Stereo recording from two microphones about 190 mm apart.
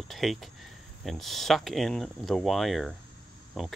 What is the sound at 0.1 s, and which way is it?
Speech, centre (ahead or behind).